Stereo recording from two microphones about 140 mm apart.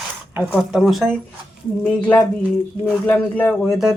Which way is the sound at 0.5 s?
Centre (ahead or behind).